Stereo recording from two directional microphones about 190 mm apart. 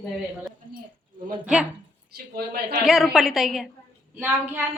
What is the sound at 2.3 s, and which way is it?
Speech, 55° right (ahead or behind).